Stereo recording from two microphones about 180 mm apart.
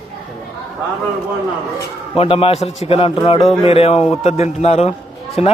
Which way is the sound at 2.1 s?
30° left (ahead or behind).